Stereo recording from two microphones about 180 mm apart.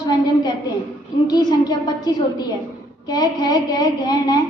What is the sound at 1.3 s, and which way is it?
Speech, 20° left (ahead or behind).